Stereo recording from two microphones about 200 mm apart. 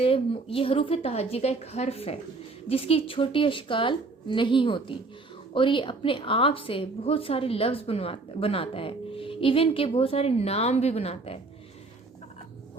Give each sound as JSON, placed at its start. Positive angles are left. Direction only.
{"t": 0.0, "sound": "a woman's voice", "side_deg": 30}